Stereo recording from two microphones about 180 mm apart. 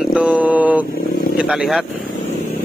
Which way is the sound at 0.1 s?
5° right (ahead or behind).